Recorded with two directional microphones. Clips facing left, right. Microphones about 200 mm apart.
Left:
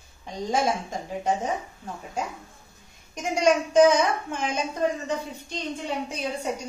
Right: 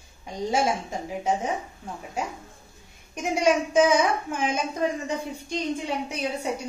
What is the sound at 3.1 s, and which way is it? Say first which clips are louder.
A woman's voice: even; 10° right (ahead or behind).